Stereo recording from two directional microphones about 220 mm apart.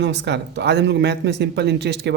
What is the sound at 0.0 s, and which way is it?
Speech, 50° right (ahead or behind).